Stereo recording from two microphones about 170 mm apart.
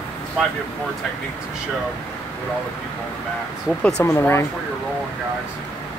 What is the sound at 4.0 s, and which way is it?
Speech, 15° left (ahead or behind).